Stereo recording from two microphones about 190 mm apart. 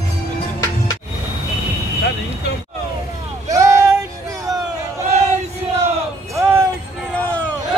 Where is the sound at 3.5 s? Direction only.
15° right (ahead or behind).